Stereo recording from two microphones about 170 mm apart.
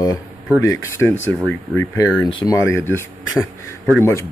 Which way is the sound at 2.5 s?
15° left (ahead or behind).